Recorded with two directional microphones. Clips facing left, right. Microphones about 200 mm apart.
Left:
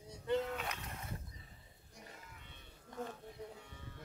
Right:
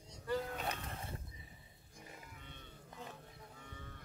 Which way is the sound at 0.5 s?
30° right (ahead or behind).